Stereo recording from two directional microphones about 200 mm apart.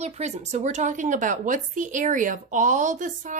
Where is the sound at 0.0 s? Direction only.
35° right (ahead or behind).